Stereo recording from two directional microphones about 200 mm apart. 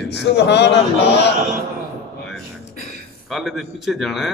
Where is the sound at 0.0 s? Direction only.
60° left (ahead or behind).